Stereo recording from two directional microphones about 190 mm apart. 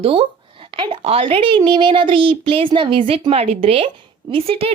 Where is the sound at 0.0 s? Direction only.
30° right (ahead or behind).